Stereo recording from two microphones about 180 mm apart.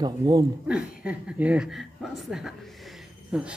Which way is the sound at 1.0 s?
5° right (ahead or behind).